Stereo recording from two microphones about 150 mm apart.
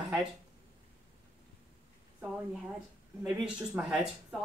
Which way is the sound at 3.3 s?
5° right (ahead or behind).